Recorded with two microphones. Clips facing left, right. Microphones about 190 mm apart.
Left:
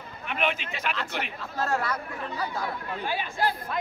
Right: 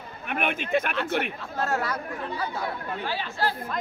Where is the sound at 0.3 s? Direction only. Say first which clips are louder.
Right 4 dB; 50° right (ahead or behind).